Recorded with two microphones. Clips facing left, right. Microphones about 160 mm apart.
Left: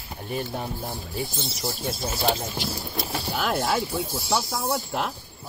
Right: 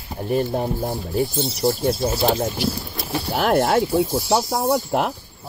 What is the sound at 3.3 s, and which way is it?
Speech, 60° right (ahead or behind).